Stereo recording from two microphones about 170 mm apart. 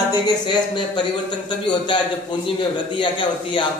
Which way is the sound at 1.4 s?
25° left (ahead or behind).